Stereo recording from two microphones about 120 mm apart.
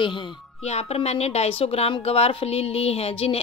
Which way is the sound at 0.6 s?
60° left (ahead or behind).